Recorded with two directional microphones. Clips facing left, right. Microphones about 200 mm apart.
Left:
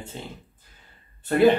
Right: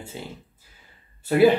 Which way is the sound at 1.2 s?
10° right (ahead or behind).